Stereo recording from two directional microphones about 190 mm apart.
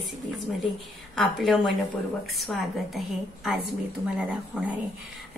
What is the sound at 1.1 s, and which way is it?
Speech, centre (ahead or behind).